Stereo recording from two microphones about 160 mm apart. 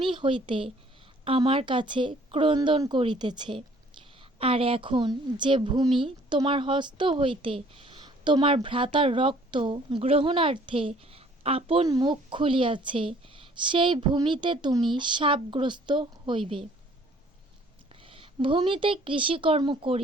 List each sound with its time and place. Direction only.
0.0 s a woman's voice: 30° right (ahead or behind)
18.0 s speech: 35° right (ahead or behind)